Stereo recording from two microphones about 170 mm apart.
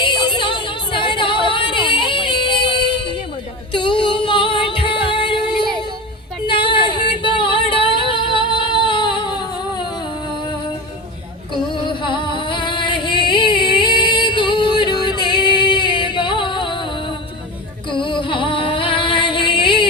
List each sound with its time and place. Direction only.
0.0 s music: 25° left (ahead or behind)
3.8 s female singing: 25° left (ahead or behind)
6.5 s female singing: 30° left (ahead or behind)
12.0 s singing: 30° left (ahead or behind)
17.8 s music: 25° left (ahead or behind)